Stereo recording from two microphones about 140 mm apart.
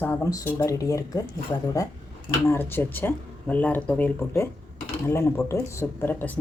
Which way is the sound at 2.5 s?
15° left (ahead or behind).